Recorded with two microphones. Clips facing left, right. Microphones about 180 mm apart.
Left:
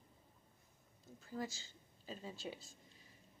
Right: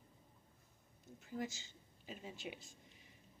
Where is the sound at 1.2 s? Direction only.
20° right (ahead or behind).